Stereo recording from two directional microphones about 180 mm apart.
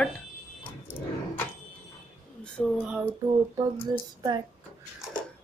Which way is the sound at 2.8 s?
10° right (ahead or behind).